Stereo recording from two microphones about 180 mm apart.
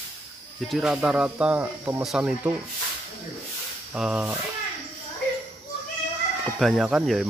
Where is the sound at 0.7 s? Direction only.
5° right (ahead or behind).